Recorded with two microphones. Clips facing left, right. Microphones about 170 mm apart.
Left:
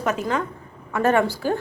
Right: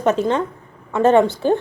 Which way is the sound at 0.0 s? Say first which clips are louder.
Right 6 dB; 30° right (ahead or behind).